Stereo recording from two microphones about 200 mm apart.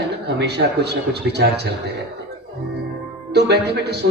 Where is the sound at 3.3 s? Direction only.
55° right (ahead or behind).